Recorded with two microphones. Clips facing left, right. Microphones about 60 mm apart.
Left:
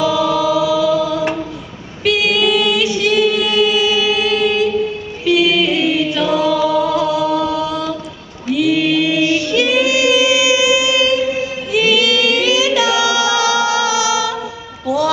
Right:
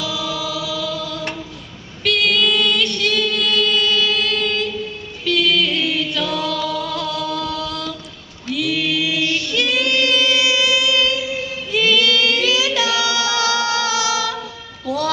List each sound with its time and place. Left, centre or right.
0.0 s choir: centre
2.0 s female singing: centre
5.2 s choir: centre
8.5 s mantra: centre
9.2 s choir: centre
9.5 s choir: centre
14.9 s a sound: centre